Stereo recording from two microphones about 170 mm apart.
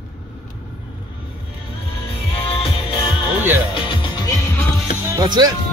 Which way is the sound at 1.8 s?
35° left (ahead or behind).